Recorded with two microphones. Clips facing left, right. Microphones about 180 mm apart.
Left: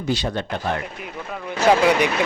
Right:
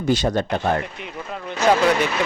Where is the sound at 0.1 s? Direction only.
45° right (ahead or behind).